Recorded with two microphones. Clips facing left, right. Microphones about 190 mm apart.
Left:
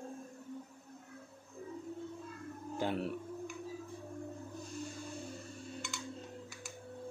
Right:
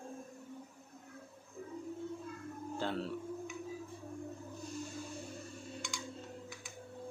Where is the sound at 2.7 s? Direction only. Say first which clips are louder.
Left 2 dB; 15° left (ahead or behind).